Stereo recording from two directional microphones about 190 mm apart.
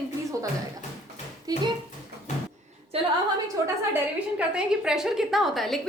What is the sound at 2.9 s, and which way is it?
Speech, 30° right (ahead or behind).